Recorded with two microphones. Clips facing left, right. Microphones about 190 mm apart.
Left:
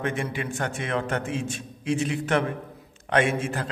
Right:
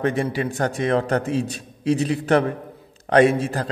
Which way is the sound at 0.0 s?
35° right (ahead or behind).